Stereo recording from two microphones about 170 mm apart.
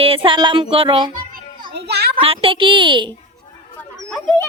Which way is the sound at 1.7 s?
80° right.